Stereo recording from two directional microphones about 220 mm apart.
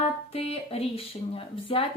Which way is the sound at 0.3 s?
25° left (ahead or behind).